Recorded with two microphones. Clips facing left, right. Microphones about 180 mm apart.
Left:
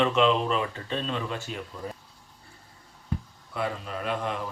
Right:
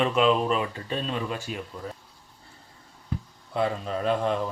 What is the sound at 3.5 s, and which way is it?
Speech, 30° right (ahead or behind).